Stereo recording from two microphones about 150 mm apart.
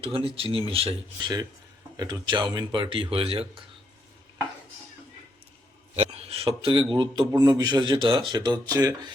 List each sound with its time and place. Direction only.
0.0 s speech: 35° right (ahead or behind)
6.0 s a sound: 45° right (ahead or behind)
6.9 s speech: 30° right (ahead or behind)